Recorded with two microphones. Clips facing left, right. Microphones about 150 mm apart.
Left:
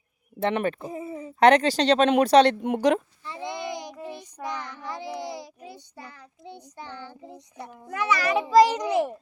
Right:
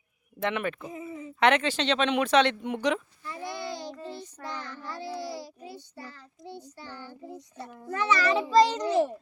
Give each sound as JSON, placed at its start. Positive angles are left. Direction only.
{"t": 0.3, "sound": "speech", "side_deg": 35}
{"t": 3.2, "sound": "child singing", "side_deg": 25}
{"t": 6.5, "sound": "a child's voice", "side_deg": 15}